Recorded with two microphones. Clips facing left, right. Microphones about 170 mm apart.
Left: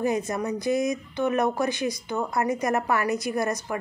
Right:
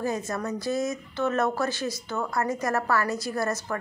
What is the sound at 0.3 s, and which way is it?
A woman's voice, 15° left (ahead or behind).